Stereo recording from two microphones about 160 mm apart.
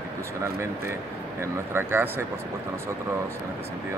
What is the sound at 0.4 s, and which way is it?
Speech, 15° right (ahead or behind).